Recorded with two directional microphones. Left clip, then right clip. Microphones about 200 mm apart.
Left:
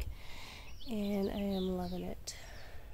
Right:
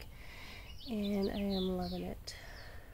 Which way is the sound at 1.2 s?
20° left (ahead or behind).